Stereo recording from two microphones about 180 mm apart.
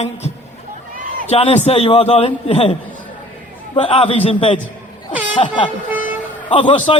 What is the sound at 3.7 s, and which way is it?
A man's voice, 30° left (ahead or behind).